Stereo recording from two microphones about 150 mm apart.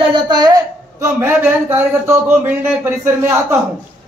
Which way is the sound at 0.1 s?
30° right (ahead or behind).